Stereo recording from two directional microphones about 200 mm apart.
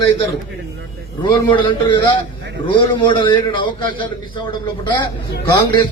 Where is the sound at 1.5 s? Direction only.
25° left (ahead or behind).